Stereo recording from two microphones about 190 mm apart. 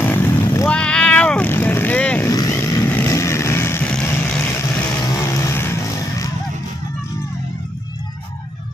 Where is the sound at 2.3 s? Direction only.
15° left (ahead or behind).